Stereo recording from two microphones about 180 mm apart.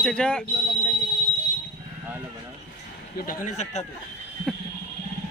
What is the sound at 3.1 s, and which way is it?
Speech, 50° left (ahead or behind).